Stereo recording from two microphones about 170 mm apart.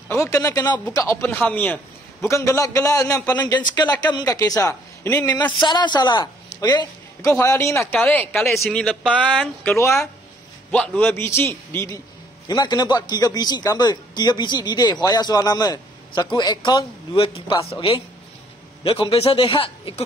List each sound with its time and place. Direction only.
0.1 s a man's voice: 20° left (ahead or behind)
5.4 s a man's voice: 25° left (ahead or behind)